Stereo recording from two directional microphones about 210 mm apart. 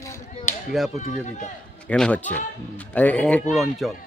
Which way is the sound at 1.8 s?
5° left (ahead or behind).